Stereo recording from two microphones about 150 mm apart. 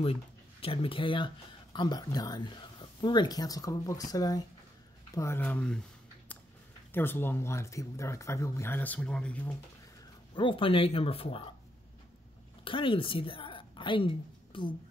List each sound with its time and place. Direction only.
0.0 s speech: 40° left (ahead or behind); by 5.8 s 10° left (ahead or behind)
6.9 s speech: 15° left (ahead or behind)
10.3 s speech: 35° left (ahead or behind)
12.6 s a woman's voice: 35° left (ahead or behind)